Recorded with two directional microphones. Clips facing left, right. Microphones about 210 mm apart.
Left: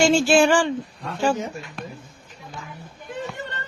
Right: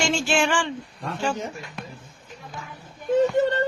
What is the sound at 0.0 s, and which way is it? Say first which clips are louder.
Speech: left 7 dB; 35° left (ahead or behind).